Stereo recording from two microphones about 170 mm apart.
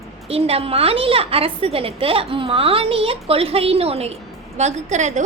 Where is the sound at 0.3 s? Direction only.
35° right (ahead or behind).